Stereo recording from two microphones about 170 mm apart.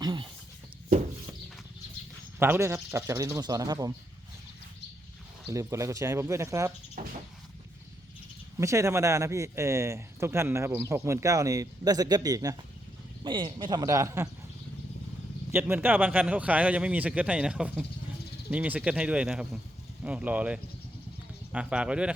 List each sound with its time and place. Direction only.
0.0 s a sound: 25° right (ahead or behind)
2.4 s speech: 15° right (ahead or behind)
5.5 s speech: 15° right (ahead or behind)
7.0 s a sound: 55° right (ahead or behind)
8.5 s a man's voice: 15° right (ahead or behind)
15.5 s speech: 10° right (ahead or behind)